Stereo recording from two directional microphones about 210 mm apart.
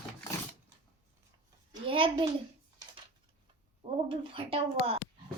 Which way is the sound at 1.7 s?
25° right (ahead or behind).